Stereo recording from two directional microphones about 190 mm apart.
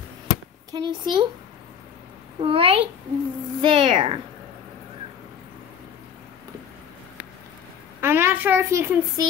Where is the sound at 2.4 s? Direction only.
30° right (ahead or behind).